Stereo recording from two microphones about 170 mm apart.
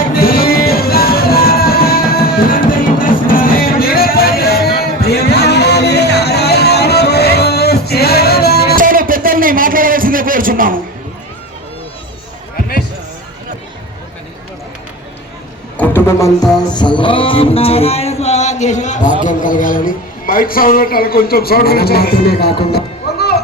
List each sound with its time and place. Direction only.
0.1 s music: 60° left (ahead or behind)
8.7 s a sound: 55° right (ahead or behind)
15.8 s music: 10° left (ahead or behind); by 19.1 s 45° left (ahead or behind)
19.2 s a man's voice: 50° left (ahead or behind); by 23.4 s 70° left (ahead or behind)